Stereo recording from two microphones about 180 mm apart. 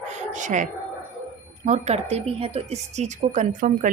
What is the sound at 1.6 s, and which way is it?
A woman's voice, 40° right (ahead or behind).